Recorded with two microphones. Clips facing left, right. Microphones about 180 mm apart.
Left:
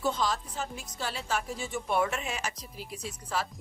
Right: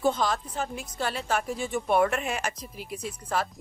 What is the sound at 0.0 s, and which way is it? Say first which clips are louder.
A woman's voice: right 4 dB; 55° right (ahead or behind).